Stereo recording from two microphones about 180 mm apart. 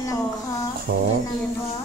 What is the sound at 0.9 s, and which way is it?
Speech, 60° right (ahead or behind).